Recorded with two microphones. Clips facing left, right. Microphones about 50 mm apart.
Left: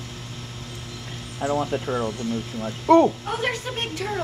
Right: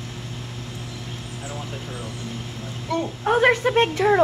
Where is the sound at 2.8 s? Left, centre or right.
Left.